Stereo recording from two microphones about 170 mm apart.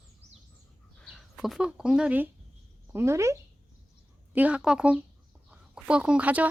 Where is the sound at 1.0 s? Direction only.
Centre (ahead or behind).